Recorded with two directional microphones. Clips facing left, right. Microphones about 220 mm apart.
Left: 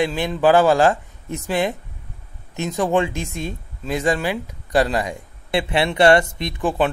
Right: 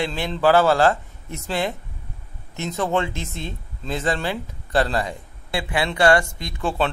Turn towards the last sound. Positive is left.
turn(degrees=15)  # may be behind; listen again after turning